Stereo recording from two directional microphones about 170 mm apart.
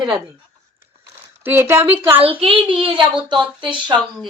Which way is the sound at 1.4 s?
15° right (ahead or behind).